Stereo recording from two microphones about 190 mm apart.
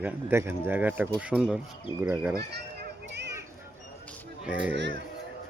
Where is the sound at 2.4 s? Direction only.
60° right (ahead or behind).